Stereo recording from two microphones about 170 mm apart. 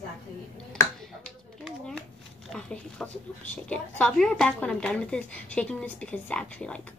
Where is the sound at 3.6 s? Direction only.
5° left (ahead or behind).